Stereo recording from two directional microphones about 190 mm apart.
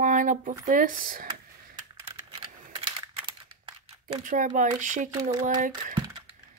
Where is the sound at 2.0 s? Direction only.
25° right (ahead or behind).